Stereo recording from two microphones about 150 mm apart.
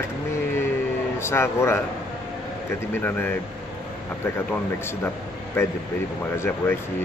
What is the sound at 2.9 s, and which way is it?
Speech, 10° left (ahead or behind).